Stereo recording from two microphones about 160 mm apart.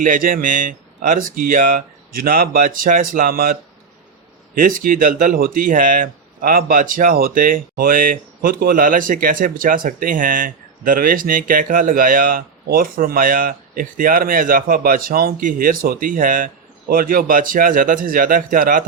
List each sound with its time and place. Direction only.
0.0 s speech: 60° right (ahead or behind)